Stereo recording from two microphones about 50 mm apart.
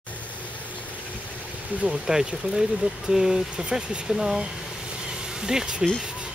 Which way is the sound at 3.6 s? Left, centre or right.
Right.